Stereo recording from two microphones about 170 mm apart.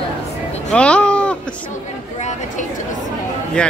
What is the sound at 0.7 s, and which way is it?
Sheep, 5° left (ahead or behind).